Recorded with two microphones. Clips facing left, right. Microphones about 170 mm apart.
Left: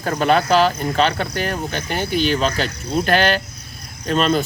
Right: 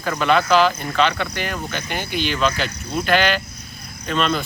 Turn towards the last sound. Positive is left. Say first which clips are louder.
# left 3 dB
turn(degrees=40)  # may be behind; listen again after turning